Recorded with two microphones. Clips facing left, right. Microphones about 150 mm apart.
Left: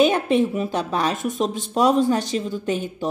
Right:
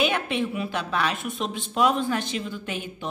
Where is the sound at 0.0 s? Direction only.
40° left (ahead or behind).